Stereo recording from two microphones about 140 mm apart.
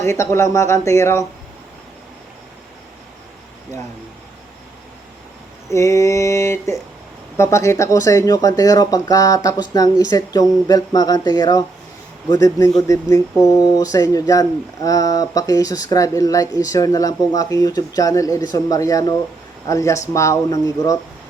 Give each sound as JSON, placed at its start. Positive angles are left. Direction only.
{"t": 0.0, "sound": "speech", "side_deg": 20}
{"t": 5.7, "sound": "speech", "side_deg": 20}